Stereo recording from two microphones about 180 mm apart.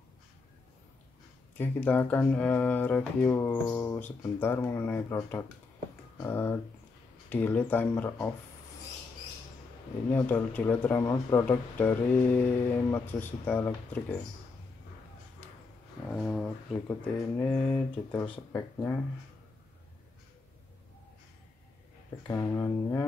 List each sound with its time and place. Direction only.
1.6 s speech: 10° left (ahead or behind)
10.1 s speech: 10° left (ahead or behind)
16.1 s speech: centre (ahead or behind)
22.3 s speech: 15° left (ahead or behind)